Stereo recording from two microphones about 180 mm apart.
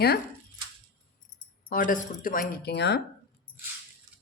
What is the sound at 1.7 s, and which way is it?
Speech, 50° left (ahead or behind).